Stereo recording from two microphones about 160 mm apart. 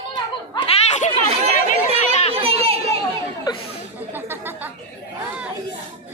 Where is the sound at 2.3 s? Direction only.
40° right (ahead or behind).